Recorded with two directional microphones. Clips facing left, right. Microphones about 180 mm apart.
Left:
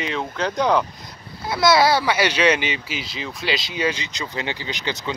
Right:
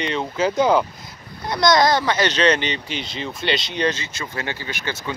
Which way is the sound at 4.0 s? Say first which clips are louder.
Left 1 dB; 20° left (ahead or behind).